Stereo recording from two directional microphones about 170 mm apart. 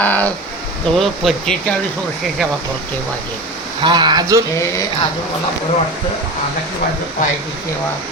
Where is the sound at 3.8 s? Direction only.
25° right (ahead or behind).